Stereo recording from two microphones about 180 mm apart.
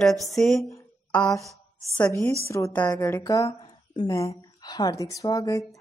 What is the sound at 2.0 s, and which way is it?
A woman's voice, 15° left (ahead or behind).